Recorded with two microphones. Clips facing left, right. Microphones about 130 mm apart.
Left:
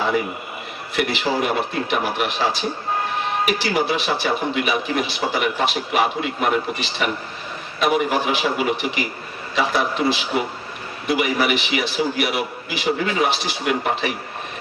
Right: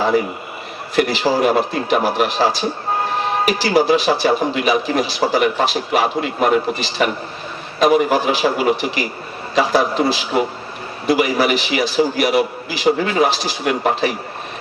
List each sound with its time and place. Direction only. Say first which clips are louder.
0.9 s speech: right 5 dB; 35° right (ahead or behind)